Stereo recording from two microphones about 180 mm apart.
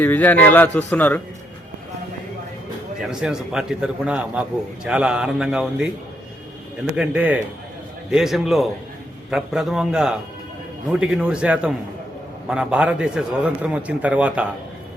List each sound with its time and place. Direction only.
0.0 s a man's voice: 10° left (ahead or behind)
3.0 s a man's voice: 5° right (ahead or behind)
6.9 s a man's voice: 5° right (ahead or behind)